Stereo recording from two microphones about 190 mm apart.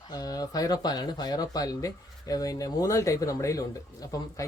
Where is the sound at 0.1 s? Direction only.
20° left (ahead or behind).